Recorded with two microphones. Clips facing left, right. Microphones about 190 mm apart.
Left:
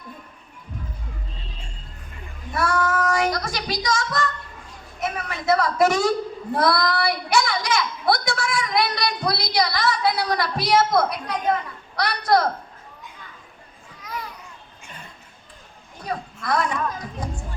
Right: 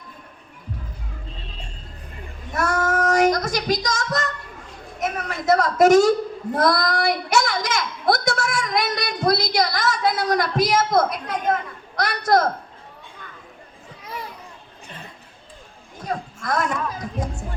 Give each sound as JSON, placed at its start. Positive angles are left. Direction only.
{"t": 2.5, "sound": "child singing", "side_deg": -45}
{"t": 4.9, "sound": "a woman's voice", "side_deg": -40}
{"t": 14.0, "sound": "children playing", "side_deg": -30}
{"t": 16.0, "sound": "a sound", "side_deg": -45}